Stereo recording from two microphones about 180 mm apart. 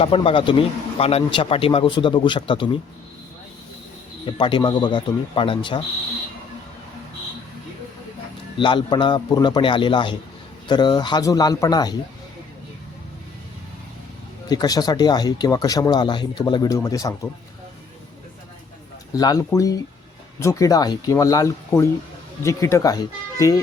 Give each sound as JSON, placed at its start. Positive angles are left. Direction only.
{"t": 0.0, "sound": "speech", "side_deg": 30}
{"t": 4.3, "sound": "speech", "side_deg": 25}
{"t": 8.5, "sound": "speech", "side_deg": 25}
{"t": 14.5, "sound": "speech", "side_deg": 20}
{"t": 19.1, "sound": "speech", "side_deg": 20}